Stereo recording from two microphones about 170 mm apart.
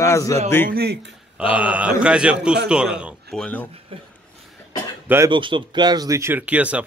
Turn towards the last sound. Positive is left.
turn(degrees=-10)  # may be behind; listen again after turning